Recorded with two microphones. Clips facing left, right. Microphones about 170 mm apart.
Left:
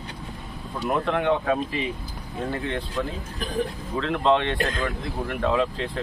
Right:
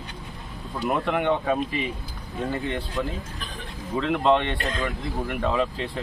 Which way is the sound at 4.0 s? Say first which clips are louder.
Even; 10° right (ahead or behind).